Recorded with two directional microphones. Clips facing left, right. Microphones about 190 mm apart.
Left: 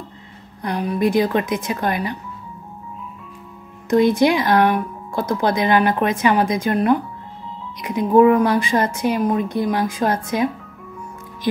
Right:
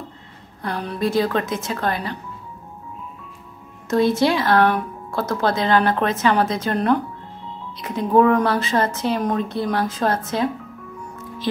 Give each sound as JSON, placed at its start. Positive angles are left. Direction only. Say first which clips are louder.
{"t": 0.6, "sound": "speech", "louder": "left 4 dB", "side_deg": 15}
{"t": 3.9, "sound": "speech", "louder": "left 3 dB", "side_deg": 15}